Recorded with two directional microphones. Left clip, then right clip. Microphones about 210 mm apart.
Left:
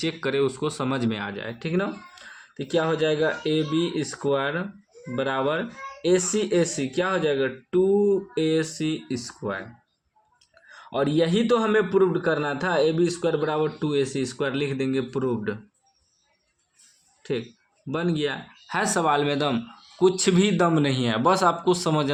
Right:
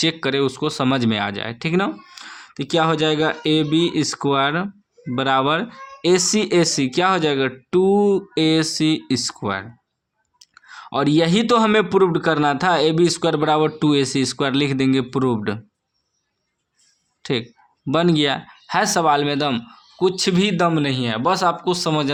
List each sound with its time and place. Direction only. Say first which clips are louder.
0.0 s a man's voice: right 5 dB; 25° right (ahead or behind)
17.2 s a man's voice: right 5 dB; 35° right (ahead or behind)
18.8 s speech: right 5 dB; 20° right (ahead or behind)